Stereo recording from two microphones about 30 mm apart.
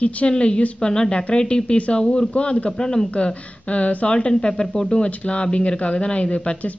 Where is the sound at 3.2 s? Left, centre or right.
Left.